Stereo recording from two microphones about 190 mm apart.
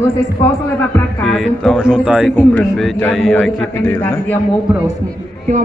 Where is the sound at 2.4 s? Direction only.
5° left (ahead or behind).